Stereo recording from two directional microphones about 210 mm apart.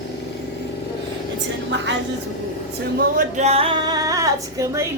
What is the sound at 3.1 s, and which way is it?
Speech, 30° right (ahead or behind).